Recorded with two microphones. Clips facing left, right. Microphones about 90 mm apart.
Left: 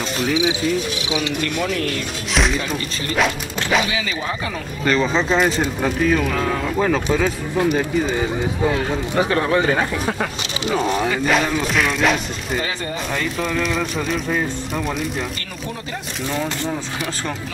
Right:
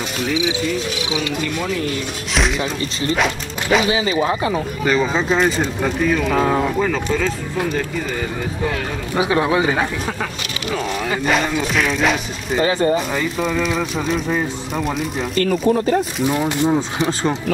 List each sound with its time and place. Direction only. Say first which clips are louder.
0.3 s speech: left 1 dB; centre (ahead or behind)
3.8 s speech: right 6 dB; 30° right (ahead or behind)
4.8 s speech: even; 5° right (ahead or behind); by 8.3 s 15° left (ahead or behind)
9.1 s speech: right 2 dB; 10° right (ahead or behind)
11.2 s speech: even; centre (ahead or behind)
15.3 s speech: right 14 dB; 45° right (ahead or behind)
16.3 s speech: right 4 dB; 15° right (ahead or behind)